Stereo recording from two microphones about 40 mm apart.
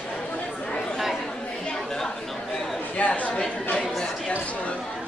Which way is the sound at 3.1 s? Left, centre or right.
Left.